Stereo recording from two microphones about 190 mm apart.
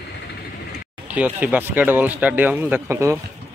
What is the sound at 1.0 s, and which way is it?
A man's voice, 10° right (ahead or behind).